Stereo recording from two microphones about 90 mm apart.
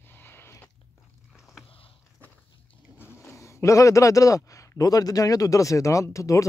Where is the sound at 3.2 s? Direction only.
35° left (ahead or behind).